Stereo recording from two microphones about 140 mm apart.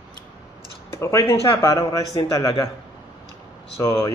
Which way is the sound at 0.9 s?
20° left (ahead or behind).